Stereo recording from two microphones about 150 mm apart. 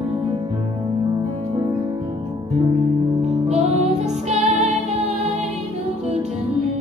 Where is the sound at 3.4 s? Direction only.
45° right (ahead or behind).